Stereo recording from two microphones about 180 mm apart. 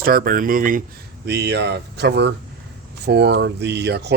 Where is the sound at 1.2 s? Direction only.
70° right (ahead or behind).